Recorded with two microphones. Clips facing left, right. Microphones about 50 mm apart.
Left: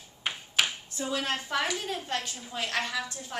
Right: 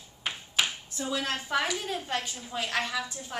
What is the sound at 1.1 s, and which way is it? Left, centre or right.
Speech, left.